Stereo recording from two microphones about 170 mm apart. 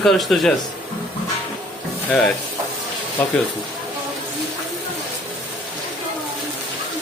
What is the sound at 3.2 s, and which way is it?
Speech, 10° left (ahead or behind).